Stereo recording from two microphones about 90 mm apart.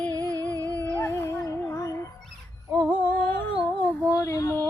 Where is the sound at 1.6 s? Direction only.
30° left (ahead or behind).